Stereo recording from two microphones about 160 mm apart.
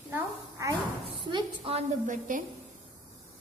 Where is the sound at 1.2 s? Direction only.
35° right (ahead or behind).